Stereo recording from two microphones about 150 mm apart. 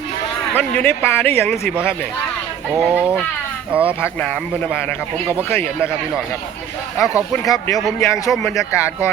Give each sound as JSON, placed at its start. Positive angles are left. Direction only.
{"t": 0.5, "sound": "a man's voice", "side_deg": 10}
{"t": 2.7, "sound": "speech", "side_deg": -5}
{"t": 4.0, "sound": "a man's voice", "side_deg": 5}
{"t": 7.0, "sound": "speech", "side_deg": -10}
{"t": 7.3, "sound": "a man's voice", "side_deg": 20}
{"t": 8.3, "sound": "a man's voice", "side_deg": 5}